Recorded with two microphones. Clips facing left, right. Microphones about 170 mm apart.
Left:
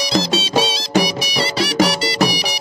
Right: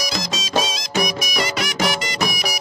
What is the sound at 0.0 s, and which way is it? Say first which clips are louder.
Music: left 8 dB; 30° left (ahead or behind).